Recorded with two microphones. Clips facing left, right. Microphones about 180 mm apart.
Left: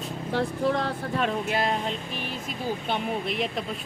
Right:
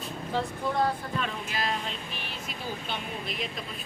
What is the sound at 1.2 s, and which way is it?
Speech, 55° left (ahead or behind).